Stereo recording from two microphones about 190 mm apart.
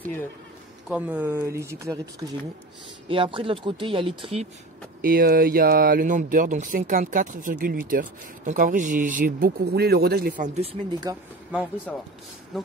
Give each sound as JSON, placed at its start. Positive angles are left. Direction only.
{"t": 0.0, "sound": "speech", "side_deg": 10}
{"t": 0.8, "sound": "speech", "side_deg": -10}
{"t": 3.1, "sound": "speech", "side_deg": -25}
{"t": 5.0, "sound": "speech", "side_deg": -50}